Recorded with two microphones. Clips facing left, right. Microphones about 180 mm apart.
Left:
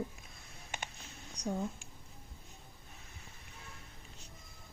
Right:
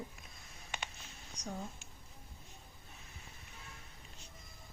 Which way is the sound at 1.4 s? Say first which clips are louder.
Left 7 dB; 60° left (ahead or behind).